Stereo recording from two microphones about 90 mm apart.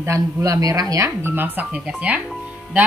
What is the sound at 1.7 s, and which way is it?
Speech, 15° right (ahead or behind).